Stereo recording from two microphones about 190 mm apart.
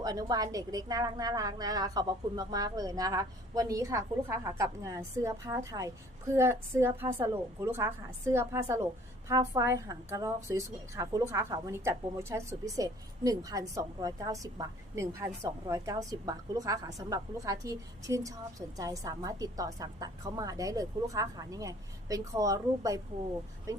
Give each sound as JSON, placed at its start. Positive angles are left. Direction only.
{"t": 0.0, "sound": "a woman's voice", "side_deg": -20}